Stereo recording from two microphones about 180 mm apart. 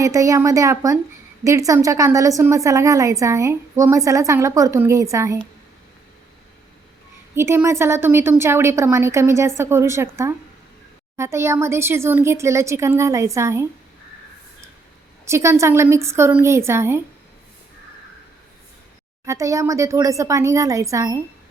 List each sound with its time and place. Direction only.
0.0 s a woman's voice: 20° right (ahead or behind)
7.3 s a woman's voice: 15° right (ahead or behind)
15.2 s a woman's voice: 15° right (ahead or behind)
19.2 s a woman's voice: 15° right (ahead or behind)